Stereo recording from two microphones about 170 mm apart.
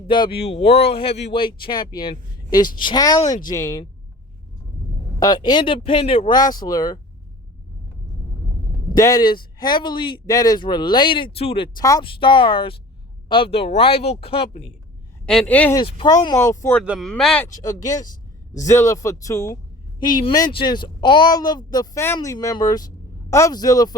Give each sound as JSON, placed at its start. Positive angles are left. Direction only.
{"t": 0.1, "sound": "speech", "side_deg": 30}
{"t": 5.2, "sound": "speech", "side_deg": 25}
{"t": 8.9, "sound": "speech", "side_deg": 20}
{"t": 11.8, "sound": "speech", "side_deg": 20}
{"t": 15.3, "sound": "speech", "side_deg": 5}
{"t": 15.7, "sound": "speech", "side_deg": 25}
{"t": 16.8, "sound": "speech", "side_deg": -5}
{"t": 17.1, "sound": "speech", "side_deg": 5}
{"t": 17.4, "sound": "speech", "side_deg": 20}